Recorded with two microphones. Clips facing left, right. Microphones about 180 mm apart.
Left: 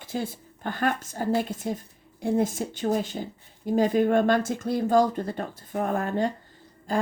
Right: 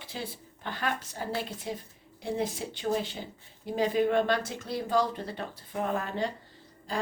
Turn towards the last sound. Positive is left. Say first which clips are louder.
# left 6 dB
turn(degrees=50)  # may be behind; listen again after turning